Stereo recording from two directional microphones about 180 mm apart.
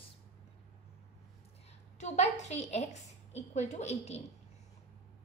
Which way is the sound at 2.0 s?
40° left (ahead or behind).